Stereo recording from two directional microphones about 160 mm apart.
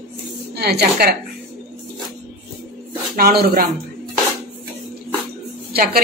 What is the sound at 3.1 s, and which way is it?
Speech, 70° right (ahead or behind).